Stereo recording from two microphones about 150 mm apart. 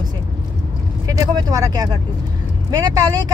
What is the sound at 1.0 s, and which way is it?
Speech, 25° right (ahead or behind).